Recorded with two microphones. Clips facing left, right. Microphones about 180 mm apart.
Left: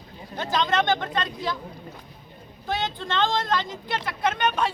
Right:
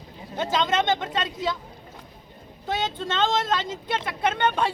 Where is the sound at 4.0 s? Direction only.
25° right (ahead or behind).